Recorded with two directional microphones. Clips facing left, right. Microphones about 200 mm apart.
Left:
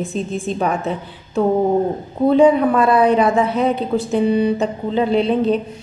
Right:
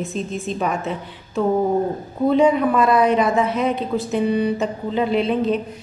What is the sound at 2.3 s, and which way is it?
A man's voice, 30° left (ahead or behind).